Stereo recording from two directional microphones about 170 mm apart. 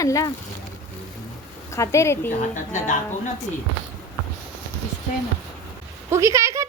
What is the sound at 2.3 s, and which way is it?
Speech, 50° left (ahead or behind).